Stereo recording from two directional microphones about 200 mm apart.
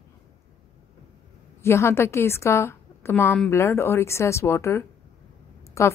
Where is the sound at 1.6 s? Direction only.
15° left (ahead or behind).